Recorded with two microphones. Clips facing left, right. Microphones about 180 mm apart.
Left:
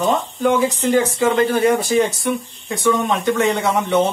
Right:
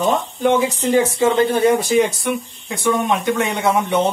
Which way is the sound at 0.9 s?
25° right (ahead or behind).